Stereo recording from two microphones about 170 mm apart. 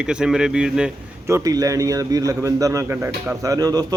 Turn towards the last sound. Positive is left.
turn(degrees=-20)  # may be behind; listen again after turning